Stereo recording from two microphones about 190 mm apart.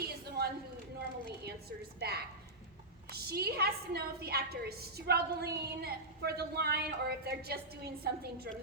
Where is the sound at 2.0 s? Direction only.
55° right (ahead or behind).